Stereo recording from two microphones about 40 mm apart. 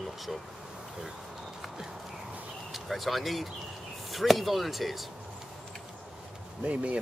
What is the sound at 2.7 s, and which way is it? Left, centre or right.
Speech, centre.